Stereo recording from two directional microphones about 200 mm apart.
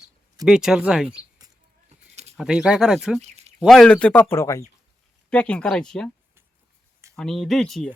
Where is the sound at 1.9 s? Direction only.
30° right (ahead or behind).